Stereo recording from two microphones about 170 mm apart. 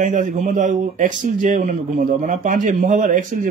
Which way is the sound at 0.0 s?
50° right (ahead or behind).